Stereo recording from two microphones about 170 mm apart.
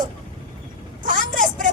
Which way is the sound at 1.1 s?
50° right (ahead or behind).